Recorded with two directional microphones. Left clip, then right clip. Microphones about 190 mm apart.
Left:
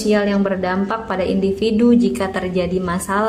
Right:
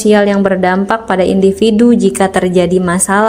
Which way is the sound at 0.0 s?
40° right (ahead or behind).